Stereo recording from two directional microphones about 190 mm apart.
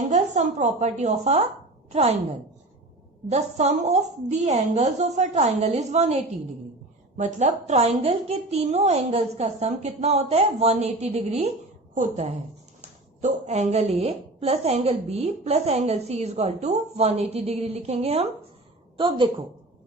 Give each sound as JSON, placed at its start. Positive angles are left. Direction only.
{"t": 0.1, "sound": "a woman's voice", "side_deg": -40}
{"t": 3.2, "sound": "a woman's voice", "side_deg": -35}